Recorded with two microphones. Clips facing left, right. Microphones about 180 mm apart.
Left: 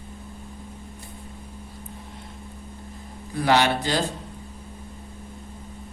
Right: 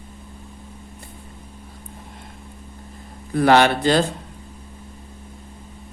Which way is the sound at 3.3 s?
55° right (ahead or behind).